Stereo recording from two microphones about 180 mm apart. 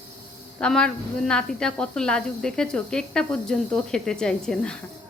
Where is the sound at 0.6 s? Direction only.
5° left (ahead or behind).